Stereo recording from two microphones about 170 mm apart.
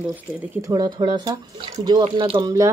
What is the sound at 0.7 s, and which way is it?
A woman's voice, 25° right (ahead or behind).